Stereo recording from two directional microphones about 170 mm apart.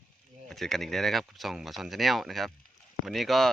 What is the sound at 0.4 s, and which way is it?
Speech, centre (ahead or behind).